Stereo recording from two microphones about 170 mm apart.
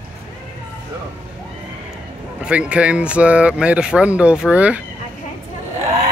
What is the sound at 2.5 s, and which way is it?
Speech, 5° right (ahead or behind).